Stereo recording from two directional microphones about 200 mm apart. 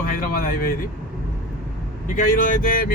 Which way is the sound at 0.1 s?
45° left (ahead or behind).